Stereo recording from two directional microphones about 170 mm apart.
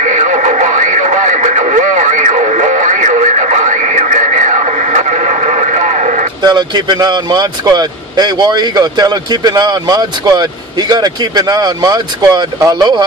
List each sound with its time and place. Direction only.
0.0 s radio: 50° right (ahead or behind)
6.4 s speech: 25° right (ahead or behind)